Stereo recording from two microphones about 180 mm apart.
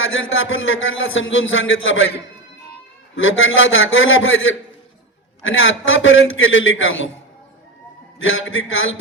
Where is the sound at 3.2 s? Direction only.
90° left.